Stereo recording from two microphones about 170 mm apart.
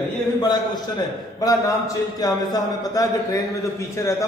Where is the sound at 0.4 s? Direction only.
25° left (ahead or behind).